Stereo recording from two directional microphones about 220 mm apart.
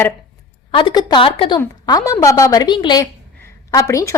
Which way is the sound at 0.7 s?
20° left (ahead or behind).